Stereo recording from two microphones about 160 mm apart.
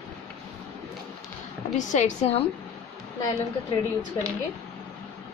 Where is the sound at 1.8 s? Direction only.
50° left (ahead or behind).